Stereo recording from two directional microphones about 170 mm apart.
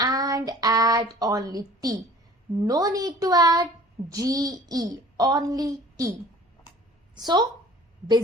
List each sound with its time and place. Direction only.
0.0 s a child's voice: 20° right (ahead or behind)
7.2 s a child's voice: 25° right (ahead or behind)